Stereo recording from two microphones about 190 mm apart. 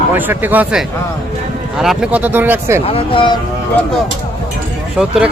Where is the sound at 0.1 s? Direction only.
10° right (ahead or behind).